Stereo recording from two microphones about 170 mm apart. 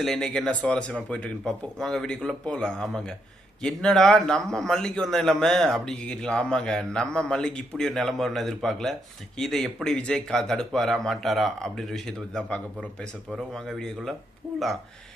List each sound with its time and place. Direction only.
0.0 s a man's voice: 5° left (ahead or behind)